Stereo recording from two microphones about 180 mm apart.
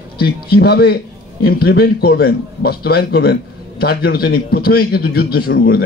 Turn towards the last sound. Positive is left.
turn(degrees=60)  # may be behind; listen again after turning